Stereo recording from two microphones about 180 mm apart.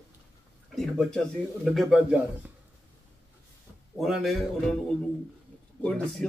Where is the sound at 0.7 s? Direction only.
Centre (ahead or behind).